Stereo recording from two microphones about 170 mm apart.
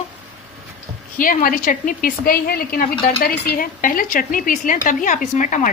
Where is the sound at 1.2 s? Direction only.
55° left (ahead or behind).